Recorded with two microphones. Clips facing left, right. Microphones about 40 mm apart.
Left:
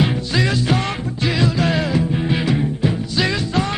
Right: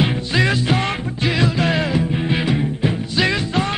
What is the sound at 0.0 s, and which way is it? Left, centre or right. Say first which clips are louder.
Music: right 1 dB; right.